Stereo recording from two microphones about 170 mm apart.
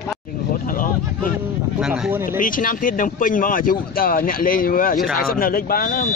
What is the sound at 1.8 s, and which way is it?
Speech, 5° right (ahead or behind).